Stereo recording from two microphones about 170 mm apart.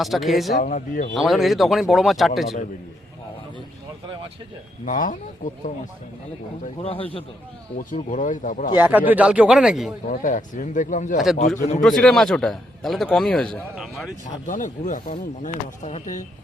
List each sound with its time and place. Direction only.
0.0 s a man's voice: centre (ahead or behind)
0.6 s speech: 45° left (ahead or behind)
1.1 s a man's voice: centre (ahead or behind)
4.9 s speech: 50° left (ahead or behind)
6.8 s a man's voice: 35° left (ahead or behind)
8.1 s speech: 50° left (ahead or behind)
8.8 s speech: 10° right (ahead or behind)
10.1 s speech: 50° left (ahead or behind)
11.8 s a man's voice: centre (ahead or behind)
14.4 s speech: 50° left (ahead or behind)